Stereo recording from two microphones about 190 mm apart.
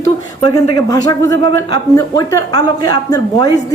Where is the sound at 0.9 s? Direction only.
20° left (ahead or behind).